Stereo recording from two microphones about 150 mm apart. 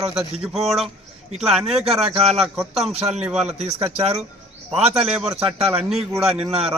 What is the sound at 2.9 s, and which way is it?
Speech, 45° right (ahead or behind).